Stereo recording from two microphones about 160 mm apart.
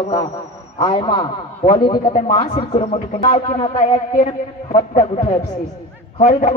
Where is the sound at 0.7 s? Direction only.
30° left (ahead or behind).